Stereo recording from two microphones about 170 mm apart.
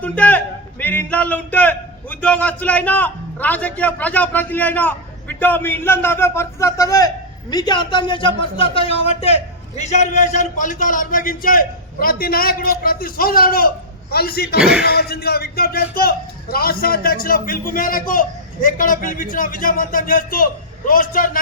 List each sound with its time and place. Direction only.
0.0 s a man's voice: 10° left (ahead or behind); by 14.6 s 65° left (ahead or behind)
14.6 s speech: 5° right (ahead or behind)
14.8 s speech: 65° left (ahead or behind)